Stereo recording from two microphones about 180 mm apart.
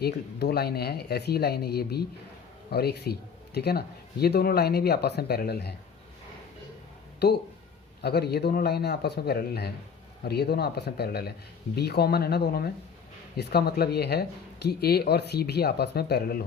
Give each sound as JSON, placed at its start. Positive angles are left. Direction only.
{"t": 0.0, "sound": "speech", "side_deg": 65}
{"t": 7.2, "sound": "speech", "side_deg": 65}